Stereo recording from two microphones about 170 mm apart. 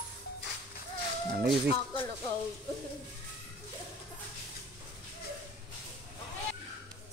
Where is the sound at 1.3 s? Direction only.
75° right (ahead or behind).